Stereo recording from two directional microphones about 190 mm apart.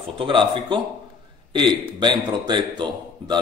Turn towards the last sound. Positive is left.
turn(degrees=-25)  # may be behind; listen again after turning